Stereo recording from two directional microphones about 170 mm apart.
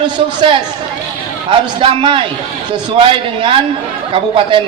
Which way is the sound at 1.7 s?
30° right (ahead or behind).